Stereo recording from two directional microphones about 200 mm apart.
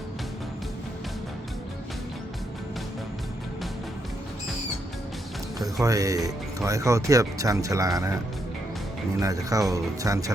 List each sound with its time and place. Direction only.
5.5 s speech: 15° right (ahead or behind)
9.2 s speech: 15° right (ahead or behind)